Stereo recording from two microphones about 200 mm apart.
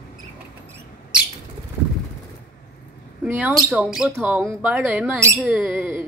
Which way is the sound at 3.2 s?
10° right (ahead or behind).